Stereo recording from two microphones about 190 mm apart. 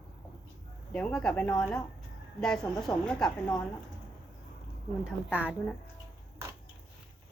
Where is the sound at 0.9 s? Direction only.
5° left (ahead or behind).